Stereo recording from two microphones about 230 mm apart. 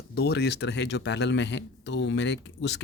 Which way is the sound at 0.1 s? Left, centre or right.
Left.